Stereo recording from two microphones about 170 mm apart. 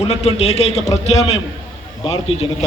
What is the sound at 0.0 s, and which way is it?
A man's voice, 40° left (ahead or behind).